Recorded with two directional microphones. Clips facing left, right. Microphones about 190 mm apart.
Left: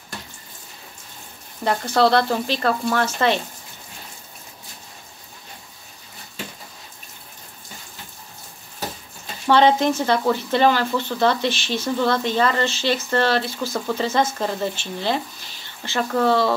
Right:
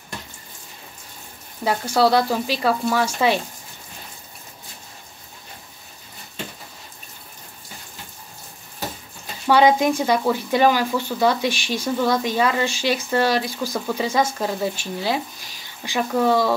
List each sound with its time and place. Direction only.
1.6 s speech: 5° right (ahead or behind)
9.5 s speech: 10° right (ahead or behind)